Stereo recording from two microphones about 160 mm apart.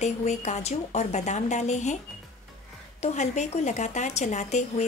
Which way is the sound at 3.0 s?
45° left (ahead or behind).